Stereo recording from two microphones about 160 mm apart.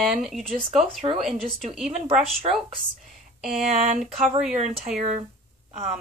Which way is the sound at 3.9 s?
5° right (ahead or behind).